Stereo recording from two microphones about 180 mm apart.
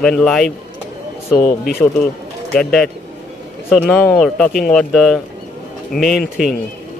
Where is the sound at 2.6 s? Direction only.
5° left (ahead or behind).